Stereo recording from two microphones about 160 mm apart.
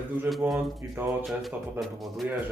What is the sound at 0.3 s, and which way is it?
Speech, centre (ahead or behind).